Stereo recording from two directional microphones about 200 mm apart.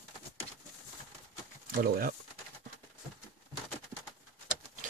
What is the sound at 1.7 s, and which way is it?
Speech, 45° right (ahead or behind).